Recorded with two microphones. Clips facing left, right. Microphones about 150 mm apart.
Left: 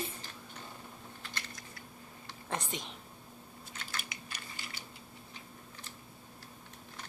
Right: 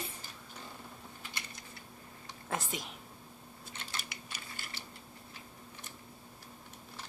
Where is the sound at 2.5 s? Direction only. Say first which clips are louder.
Even; 5° right (ahead or behind).